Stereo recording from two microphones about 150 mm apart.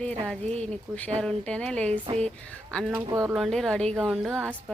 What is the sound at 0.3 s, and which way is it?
Speech, 10° left (ahead or behind).